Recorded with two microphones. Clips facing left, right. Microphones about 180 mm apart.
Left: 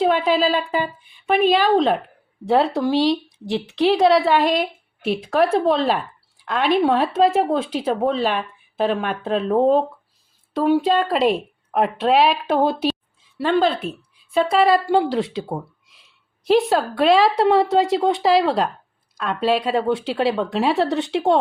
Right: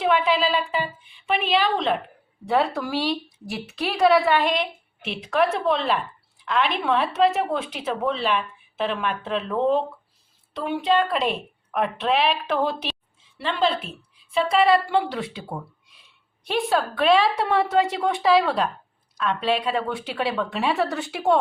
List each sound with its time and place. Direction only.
0.0 s speech: 35° left (ahead or behind)
2.5 s speech: 25° left (ahead or behind)
11.1 s speech: 35° left (ahead or behind)
13.4 s a woman's voice: 45° left (ahead or behind)
14.8 s speech: 30° left (ahead or behind)
16.6 s speech: 35° left (ahead or behind)